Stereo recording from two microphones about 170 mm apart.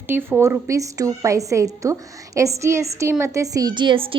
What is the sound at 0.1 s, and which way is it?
A woman's voice, 15° right (ahead or behind).